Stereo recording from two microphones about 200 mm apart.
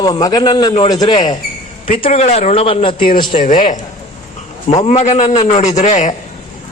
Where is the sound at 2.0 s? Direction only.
30° left (ahead or behind).